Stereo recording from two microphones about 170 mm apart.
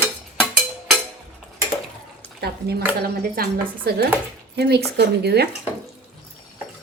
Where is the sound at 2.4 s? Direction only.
70° right (ahead or behind).